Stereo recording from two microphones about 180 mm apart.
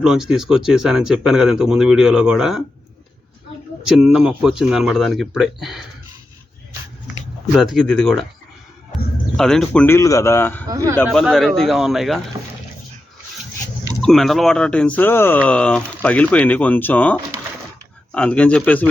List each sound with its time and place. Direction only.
0.0 s speech: 5° right (ahead or behind)
3.8 s speech: 5° right (ahead or behind)
7.5 s speech: centre (ahead or behind)
9.4 s speech: 5° left (ahead or behind)
10.7 s speech: 20° right (ahead or behind)
10.9 s speech: 5° left (ahead or behind)
14.0 s speech: centre (ahead or behind)